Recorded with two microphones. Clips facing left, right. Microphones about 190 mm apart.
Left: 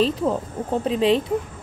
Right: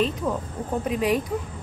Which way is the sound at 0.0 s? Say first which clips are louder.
Left 4 dB; 30° left (ahead or behind).